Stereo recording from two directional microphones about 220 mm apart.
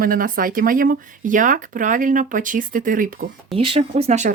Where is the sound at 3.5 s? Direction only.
25° right (ahead or behind).